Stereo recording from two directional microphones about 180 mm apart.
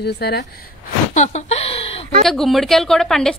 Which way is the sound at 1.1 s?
40° left (ahead or behind).